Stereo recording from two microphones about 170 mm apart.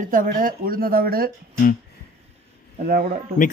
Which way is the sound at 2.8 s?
60° right (ahead or behind).